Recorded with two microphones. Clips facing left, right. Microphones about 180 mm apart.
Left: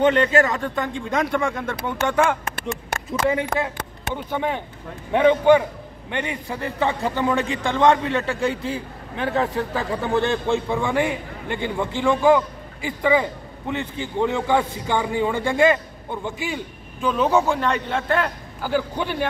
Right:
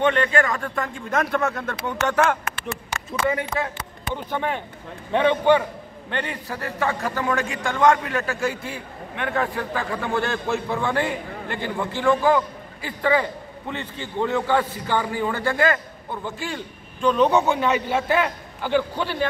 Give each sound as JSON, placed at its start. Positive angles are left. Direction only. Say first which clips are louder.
{"t": 0.0, "sound": "a man's voice", "louder": "left 3 dB", "side_deg": 25}
{"t": 4.1, "sound": "a man's voice", "louder": "left 1 dB", "side_deg": 10}
{"t": 18.6, "sound": "a man's voice", "louder": "right 1 dB", "side_deg": 5}